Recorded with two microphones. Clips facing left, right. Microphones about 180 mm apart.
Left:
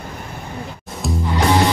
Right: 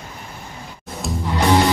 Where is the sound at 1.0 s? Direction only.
Centre (ahead or behind).